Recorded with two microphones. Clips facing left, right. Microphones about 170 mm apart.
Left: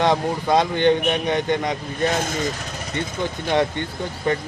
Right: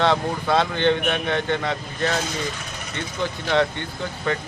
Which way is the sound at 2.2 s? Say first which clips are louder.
Left 3 dB; 45° left (ahead or behind).